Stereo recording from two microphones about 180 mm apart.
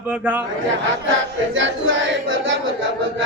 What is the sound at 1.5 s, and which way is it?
Speech, 90° right.